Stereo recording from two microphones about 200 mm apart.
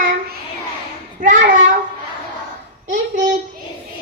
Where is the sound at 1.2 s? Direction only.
40° right (ahead or behind).